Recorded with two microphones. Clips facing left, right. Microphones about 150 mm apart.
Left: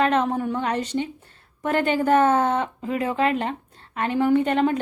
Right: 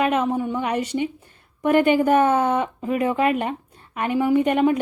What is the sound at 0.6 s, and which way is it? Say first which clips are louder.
A woman's voice: right 2 dB; 10° right (ahead or behind).